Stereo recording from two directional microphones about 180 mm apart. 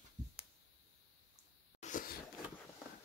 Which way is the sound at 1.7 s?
45° left (ahead or behind).